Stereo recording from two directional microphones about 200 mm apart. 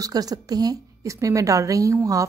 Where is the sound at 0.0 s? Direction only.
20° right (ahead or behind).